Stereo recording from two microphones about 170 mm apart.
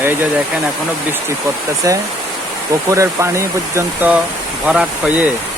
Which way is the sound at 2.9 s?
15° right (ahead or behind).